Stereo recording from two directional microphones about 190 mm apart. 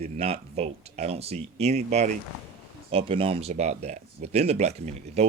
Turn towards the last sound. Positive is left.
turn(degrees=-35)  # may be behind; listen again after turning